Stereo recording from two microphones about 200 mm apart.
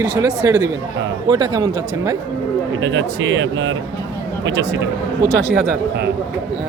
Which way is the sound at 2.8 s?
70° right (ahead or behind).